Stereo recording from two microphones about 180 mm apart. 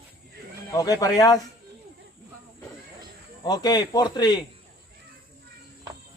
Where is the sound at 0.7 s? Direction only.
20° left (ahead or behind).